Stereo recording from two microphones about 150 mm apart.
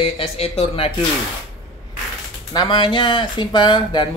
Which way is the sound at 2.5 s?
30° left (ahead or behind).